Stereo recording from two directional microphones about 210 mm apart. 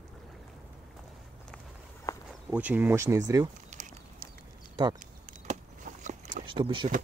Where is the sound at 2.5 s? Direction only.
5° right (ahead or behind).